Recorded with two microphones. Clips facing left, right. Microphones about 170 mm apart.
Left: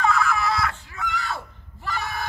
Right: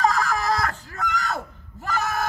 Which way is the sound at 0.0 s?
40° right (ahead or behind).